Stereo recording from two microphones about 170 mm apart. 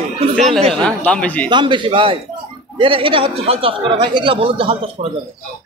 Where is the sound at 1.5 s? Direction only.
25° right (ahead or behind).